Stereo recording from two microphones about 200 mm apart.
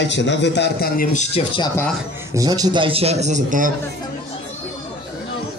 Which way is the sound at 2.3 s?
20° right (ahead or behind).